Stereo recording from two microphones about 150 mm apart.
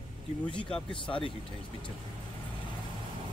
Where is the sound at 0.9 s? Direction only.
35° left (ahead or behind).